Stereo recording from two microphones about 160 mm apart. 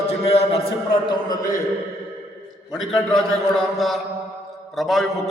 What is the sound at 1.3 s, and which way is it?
Speech, 20° left (ahead or behind).